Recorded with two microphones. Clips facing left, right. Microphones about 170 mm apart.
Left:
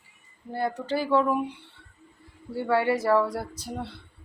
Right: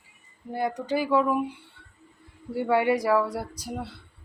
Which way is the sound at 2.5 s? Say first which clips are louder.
Right 1 dB; 15° right (ahead or behind).